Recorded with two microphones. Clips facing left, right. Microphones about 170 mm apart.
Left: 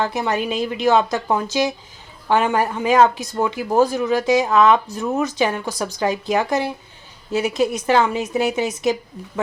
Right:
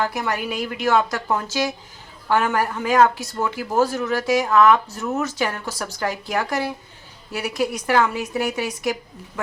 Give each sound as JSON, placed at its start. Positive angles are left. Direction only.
{"t": 0.0, "sound": "speech", "side_deg": 20}